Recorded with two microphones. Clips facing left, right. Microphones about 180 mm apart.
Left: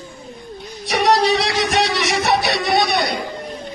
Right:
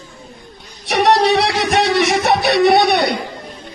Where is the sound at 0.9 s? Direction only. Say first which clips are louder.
Right 3 dB; 60° right (ahead or behind).